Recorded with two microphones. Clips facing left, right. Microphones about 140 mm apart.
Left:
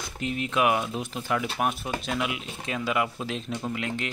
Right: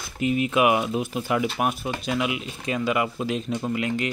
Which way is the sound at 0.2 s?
10° right (ahead or behind).